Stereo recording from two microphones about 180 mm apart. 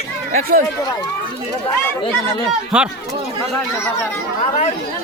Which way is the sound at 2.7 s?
5° right (ahead or behind).